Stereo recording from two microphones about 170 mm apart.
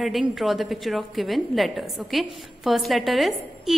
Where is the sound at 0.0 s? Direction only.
Centre (ahead or behind).